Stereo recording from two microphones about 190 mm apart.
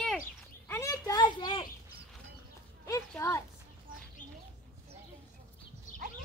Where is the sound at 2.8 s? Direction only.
15° left (ahead or behind).